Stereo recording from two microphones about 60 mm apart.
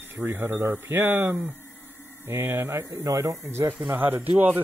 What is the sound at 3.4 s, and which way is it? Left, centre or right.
Speech, right.